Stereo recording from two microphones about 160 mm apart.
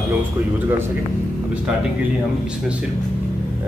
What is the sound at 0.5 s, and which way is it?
Speech, 15° right (ahead or behind).